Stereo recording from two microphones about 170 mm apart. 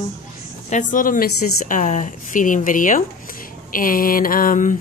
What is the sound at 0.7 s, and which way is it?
A woman's voice, 50° left (ahead or behind).